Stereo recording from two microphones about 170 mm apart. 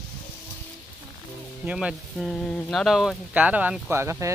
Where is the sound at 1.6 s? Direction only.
5° right (ahead or behind).